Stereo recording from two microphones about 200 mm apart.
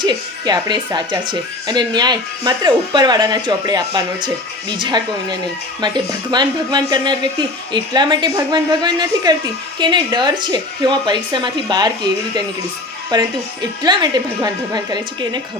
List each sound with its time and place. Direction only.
0.0 s speech: 20° right (ahead or behind)
13.1 s speech: 20° right (ahead or behind)